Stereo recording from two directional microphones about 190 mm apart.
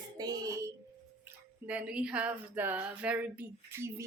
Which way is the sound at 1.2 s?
10° right (ahead or behind).